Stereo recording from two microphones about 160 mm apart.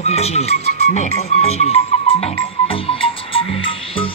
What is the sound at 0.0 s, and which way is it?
Speech, 40° left (ahead or behind).